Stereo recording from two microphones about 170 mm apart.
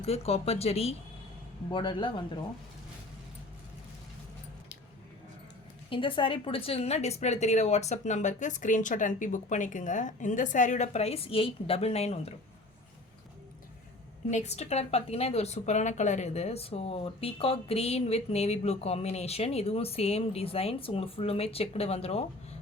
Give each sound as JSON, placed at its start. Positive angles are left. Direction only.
{"t": 0.0, "sound": "speech", "side_deg": 35}
{"t": 5.9, "sound": "speech", "side_deg": 30}
{"t": 14.3, "sound": "speech", "side_deg": 40}